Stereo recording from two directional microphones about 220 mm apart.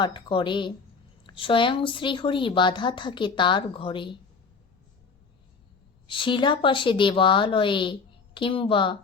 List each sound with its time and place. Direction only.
0.0 s speech: 20° left (ahead or behind)
6.1 s speech: 20° left (ahead or behind)